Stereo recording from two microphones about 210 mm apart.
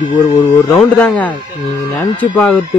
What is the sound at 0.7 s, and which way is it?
A man's voice, 5° left (ahead or behind).